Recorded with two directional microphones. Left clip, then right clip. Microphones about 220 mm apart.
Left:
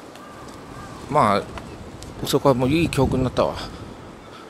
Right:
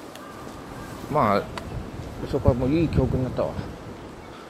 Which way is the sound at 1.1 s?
5° left (ahead or behind).